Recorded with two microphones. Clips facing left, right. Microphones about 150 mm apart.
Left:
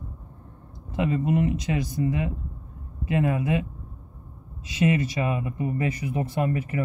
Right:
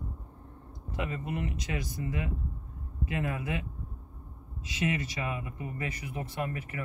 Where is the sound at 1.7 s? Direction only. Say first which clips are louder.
Left 9 dB; 25° left (ahead or behind).